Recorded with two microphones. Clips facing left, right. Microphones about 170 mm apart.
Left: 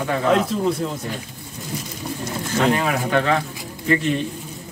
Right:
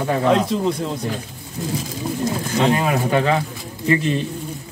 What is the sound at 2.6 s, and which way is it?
Speech, 20° right (ahead or behind).